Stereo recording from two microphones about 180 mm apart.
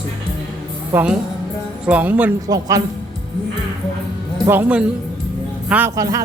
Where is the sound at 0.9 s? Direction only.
10° right (ahead or behind).